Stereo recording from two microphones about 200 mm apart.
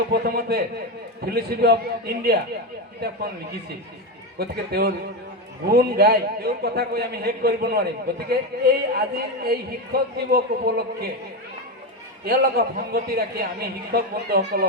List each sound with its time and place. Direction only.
0.1 s speech: 50° right (ahead or behind)
4.4 s speech: 50° right (ahead or behind)
12.2 s speech: 50° right (ahead or behind)